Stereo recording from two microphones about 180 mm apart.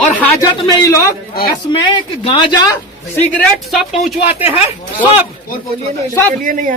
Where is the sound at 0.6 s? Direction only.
20° left (ahead or behind).